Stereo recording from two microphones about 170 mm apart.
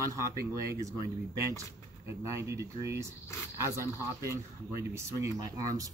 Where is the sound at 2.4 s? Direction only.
15° right (ahead or behind).